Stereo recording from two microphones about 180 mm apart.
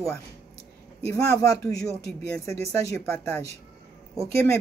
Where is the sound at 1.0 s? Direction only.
15° left (ahead or behind).